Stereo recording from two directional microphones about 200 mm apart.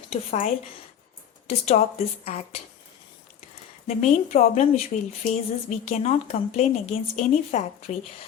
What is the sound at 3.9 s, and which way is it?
Speech, 35° left (ahead or behind).